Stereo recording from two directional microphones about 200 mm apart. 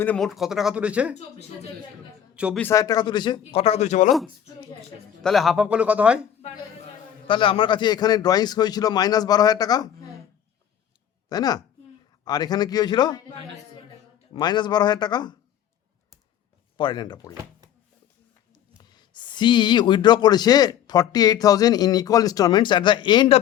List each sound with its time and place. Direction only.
0.0 s speech: 5° left (ahead or behind)
2.3 s speech: 5° right (ahead or behind)
2.6 s speech: 15° left (ahead or behind); by 4.1 s 35° left (ahead or behind)
5.2 s speech: centre (ahead or behind)
7.3 s speech: 25° left (ahead or behind)
11.3 s speech: 20° left (ahead or behind)
14.3 s speech: 20° left (ahead or behind)
16.7 s speech: 20° left (ahead or behind)
18.8 s speech: 20° left (ahead or behind)